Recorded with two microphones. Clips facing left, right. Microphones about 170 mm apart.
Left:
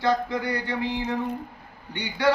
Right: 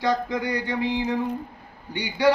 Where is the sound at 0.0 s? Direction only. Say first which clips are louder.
Even; 15° right (ahead or behind).